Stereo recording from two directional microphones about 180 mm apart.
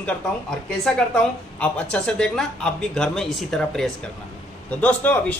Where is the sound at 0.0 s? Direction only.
5° left (ahead or behind).